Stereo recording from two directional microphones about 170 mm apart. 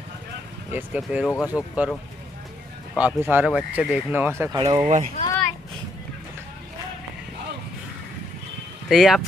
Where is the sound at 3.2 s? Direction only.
10° right (ahead or behind).